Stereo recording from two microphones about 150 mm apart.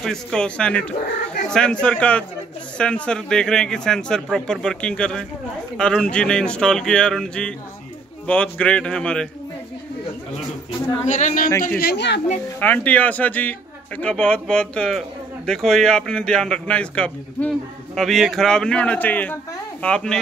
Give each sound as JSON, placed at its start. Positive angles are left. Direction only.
{"t": 0.0, "sound": "a man's voice", "side_deg": 5}
{"t": 11.1, "sound": "speech", "side_deg": 55}
{"t": 11.6, "sound": "speech", "side_deg": 80}
{"t": 12.5, "sound": "speech", "side_deg": 10}